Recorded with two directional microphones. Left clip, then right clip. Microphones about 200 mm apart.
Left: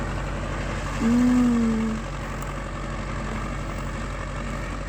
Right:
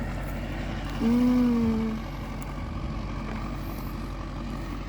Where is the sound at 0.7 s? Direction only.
20° left (ahead or behind).